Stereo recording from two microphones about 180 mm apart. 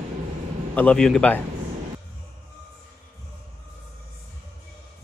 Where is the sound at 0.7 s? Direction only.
5° left (ahead or behind).